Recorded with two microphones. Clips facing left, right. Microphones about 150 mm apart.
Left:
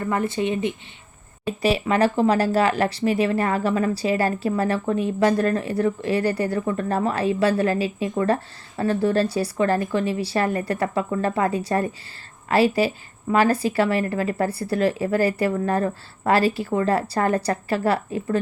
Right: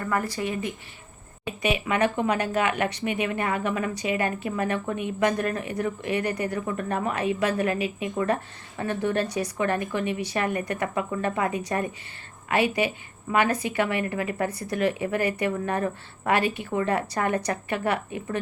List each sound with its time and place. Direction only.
0.0 s speech: 25° left (ahead or behind)
1.6 s speech: 35° left (ahead or behind)